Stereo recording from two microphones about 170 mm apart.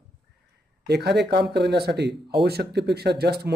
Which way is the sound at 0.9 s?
75° right (ahead or behind).